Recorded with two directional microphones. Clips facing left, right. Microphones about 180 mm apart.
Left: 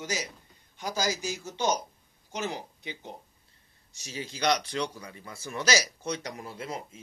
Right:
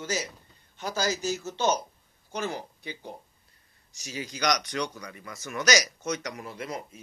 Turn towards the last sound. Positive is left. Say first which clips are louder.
# right 1 dB
turn(degrees=30)  # may be behind; listen again after turning